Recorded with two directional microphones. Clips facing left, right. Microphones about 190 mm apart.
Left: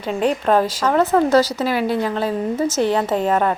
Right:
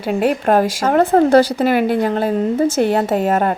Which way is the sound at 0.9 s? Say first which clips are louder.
Right 4 dB; 50° right (ahead or behind).